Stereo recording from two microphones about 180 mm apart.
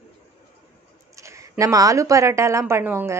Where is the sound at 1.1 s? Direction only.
15° right (ahead or behind).